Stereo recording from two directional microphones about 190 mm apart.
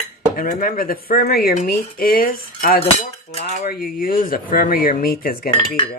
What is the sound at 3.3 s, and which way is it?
Cutlery, 35° left (ahead or behind).